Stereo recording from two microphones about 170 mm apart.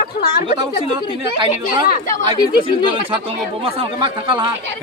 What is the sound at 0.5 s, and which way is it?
Speech, 25° right (ahead or behind).